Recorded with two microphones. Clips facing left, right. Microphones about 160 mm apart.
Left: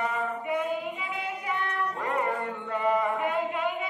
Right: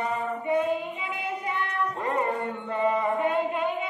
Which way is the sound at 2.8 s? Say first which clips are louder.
Right 1 dB; 25° right (ahead or behind).